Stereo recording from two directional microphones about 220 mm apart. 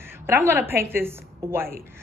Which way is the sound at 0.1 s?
10° right (ahead or behind).